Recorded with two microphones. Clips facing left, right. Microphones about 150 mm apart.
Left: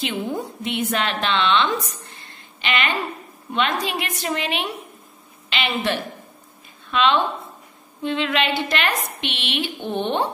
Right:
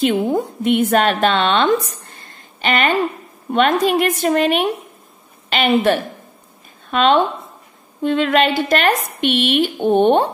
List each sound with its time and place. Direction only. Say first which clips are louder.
0.2 s a woman's voice: right 8 dB; 50° right (ahead or behind)